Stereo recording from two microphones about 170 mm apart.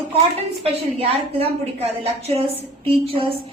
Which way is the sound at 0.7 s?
35° right (ahead or behind).